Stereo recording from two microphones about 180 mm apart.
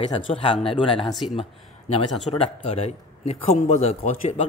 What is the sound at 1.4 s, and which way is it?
A man's voice, 35° left (ahead or behind).